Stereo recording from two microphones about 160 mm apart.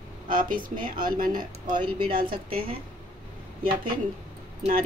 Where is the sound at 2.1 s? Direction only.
65° right (ahead or behind).